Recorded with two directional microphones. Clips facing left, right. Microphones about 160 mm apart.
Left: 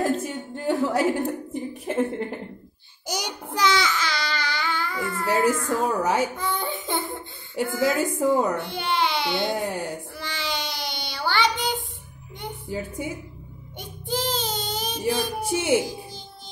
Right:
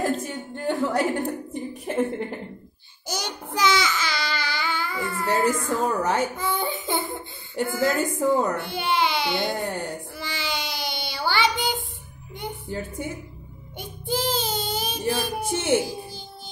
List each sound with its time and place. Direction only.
0.0 s a sound: centre (ahead or behind)
3.1 s child singing: 15° left (ahead or behind)
3.4 s baby cry: centre (ahead or behind)
5.7 s a woman's voice: 5° left (ahead or behind)
6.3 s baby cry: 5° right (ahead or behind)
7.5 s a woman's voice: centre (ahead or behind)
8.5 s baby cry: 5° right (ahead or behind)
12.6 s a woman's voice: 10° left (ahead or behind)
13.7 s child singing: 10° right (ahead or behind)
15.1 s speech: 5° right (ahead or behind)
15.5 s a woman's voice: 10° left (ahead or behind)